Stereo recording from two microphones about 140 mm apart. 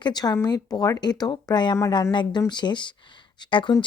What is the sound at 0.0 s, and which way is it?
Speech, 30° left (ahead or behind).